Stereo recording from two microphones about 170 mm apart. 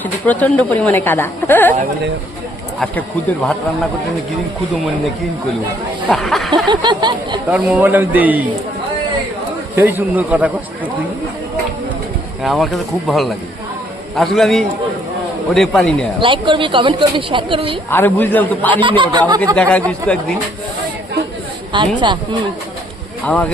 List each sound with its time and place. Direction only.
0.0 s speech: 10° left (ahead or behind)
2.8 s speech: 10° left (ahead or behind)
6.1 s speech: centre (ahead or behind)
6.7 s speech: 25° right (ahead or behind)
7.4 s a man's voice: 10° right (ahead or behind)
9.7 s a man's voice: 10° right (ahead or behind)
12.4 s speech: centre (ahead or behind)
16.2 s speech: 30° right (ahead or behind)
17.9 s speech: 10° left (ahead or behind)
18.8 s speech: 30° right (ahead or behind)
19.5 s speech: 10° left (ahead or behind)
21.7 s speech: 25° right (ahead or behind)
23.2 s speech: 10° left (ahead or behind)